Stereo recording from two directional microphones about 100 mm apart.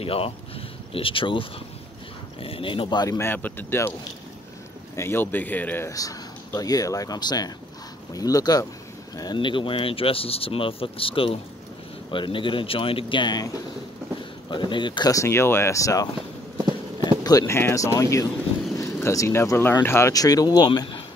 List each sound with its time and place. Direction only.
0.0 s speech: 70° left (ahead or behind); by 3.1 s 55° left (ahead or behind)
3.1 s speech: 25° left (ahead or behind)
4.9 s speech: 25° left (ahead or behind)
5.9 s speech: 35° left (ahead or behind)
14.5 s speech: 50° left (ahead or behind)
15.1 s speech: 25° left (ahead or behind)
17.2 s speech: 40° left (ahead or behind)
17.6 s speech: 25° left (ahead or behind)
20.1 s speech: 40° left (ahead or behind)